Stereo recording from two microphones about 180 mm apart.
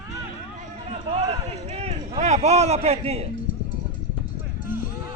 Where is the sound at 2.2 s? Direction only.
40° right (ahead or behind).